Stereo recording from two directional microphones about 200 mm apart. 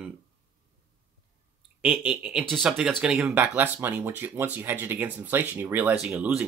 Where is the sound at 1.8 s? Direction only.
5° right (ahead or behind).